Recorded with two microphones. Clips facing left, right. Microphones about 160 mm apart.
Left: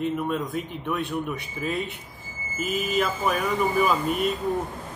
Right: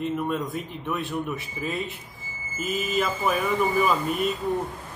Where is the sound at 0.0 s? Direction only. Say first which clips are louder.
Left 1 dB; centre (ahead or behind).